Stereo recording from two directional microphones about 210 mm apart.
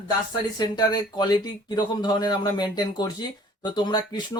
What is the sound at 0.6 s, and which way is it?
Speech, 20° left (ahead or behind).